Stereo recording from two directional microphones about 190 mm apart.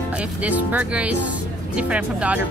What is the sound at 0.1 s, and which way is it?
Speech, 5° right (ahead or behind).